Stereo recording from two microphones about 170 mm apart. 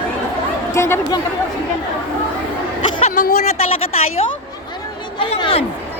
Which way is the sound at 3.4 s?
40° left (ahead or behind).